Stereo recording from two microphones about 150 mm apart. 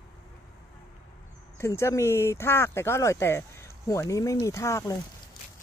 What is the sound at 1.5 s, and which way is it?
Speech, 20° left (ahead or behind).